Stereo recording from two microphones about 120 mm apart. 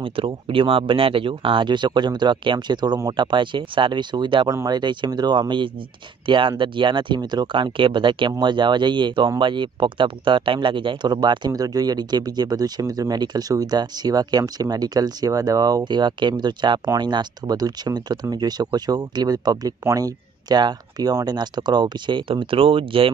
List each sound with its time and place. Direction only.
0.0 s speech: 50° right (ahead or behind)